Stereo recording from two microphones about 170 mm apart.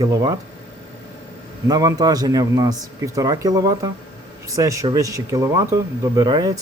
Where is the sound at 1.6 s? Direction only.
20° right (ahead or behind).